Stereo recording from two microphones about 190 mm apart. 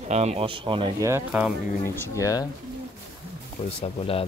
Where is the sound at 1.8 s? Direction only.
10° left (ahead or behind).